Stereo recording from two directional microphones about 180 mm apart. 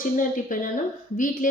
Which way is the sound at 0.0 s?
50° left (ahead or behind).